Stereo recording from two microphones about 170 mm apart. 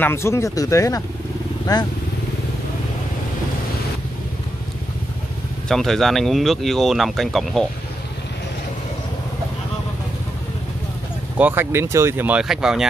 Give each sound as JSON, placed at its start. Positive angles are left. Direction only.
{"t": 0.0, "sound": "speech", "side_deg": 15}
{"t": 5.7, "sound": "speech", "side_deg": 0}
{"t": 11.3, "sound": "speech", "side_deg": -10}